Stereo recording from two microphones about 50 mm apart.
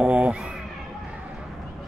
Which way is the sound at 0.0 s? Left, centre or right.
Right.